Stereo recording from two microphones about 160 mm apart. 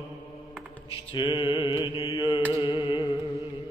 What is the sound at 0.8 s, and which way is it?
Mantra, 30° left (ahead or behind).